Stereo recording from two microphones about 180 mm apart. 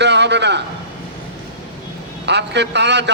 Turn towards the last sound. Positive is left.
turn(degrees=-75)  # may be behind; listen again after turning